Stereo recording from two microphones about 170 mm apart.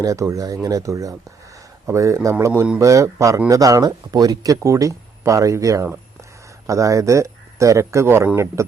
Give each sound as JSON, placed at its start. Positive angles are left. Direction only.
{"t": 0.0, "sound": "speech", "side_deg": -20}